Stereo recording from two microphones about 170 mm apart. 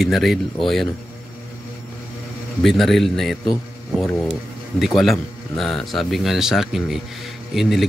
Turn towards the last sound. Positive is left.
turn(degrees=0)  # may be behind; listen again after turning